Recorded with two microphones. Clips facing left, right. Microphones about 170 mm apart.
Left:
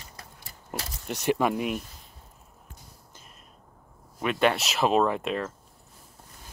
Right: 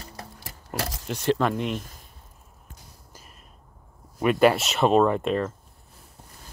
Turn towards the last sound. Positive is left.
turn(degrees=0)  # may be behind; listen again after turning